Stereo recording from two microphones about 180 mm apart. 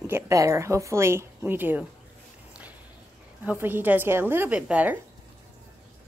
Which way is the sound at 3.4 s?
10° right (ahead or behind).